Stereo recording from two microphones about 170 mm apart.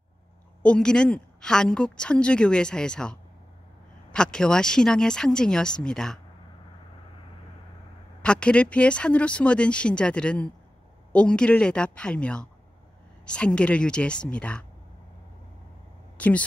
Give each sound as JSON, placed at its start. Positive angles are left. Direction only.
{"t": 0.6, "sound": "a woman's voice", "side_deg": 5}
{"t": 8.2, "sound": "a woman's voice", "side_deg": 5}
{"t": 16.2, "sound": "speech", "side_deg": 10}